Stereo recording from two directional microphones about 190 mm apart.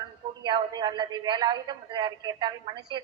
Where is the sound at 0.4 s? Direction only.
25° right (ahead or behind).